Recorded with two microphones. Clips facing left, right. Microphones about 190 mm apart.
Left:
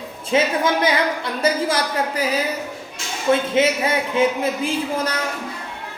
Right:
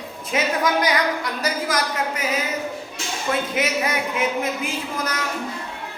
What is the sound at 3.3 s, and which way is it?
A woman's voice, 25° left (ahead or behind).